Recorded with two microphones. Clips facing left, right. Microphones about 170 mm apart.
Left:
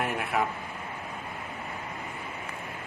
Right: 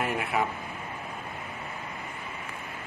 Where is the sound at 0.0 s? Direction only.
Centre (ahead or behind).